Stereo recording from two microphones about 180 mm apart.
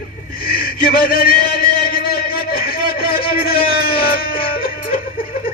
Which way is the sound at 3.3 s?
55° left (ahead or behind).